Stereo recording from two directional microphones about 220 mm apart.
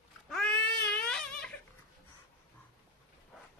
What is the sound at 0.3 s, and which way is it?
Baby cry, 5° left (ahead or behind).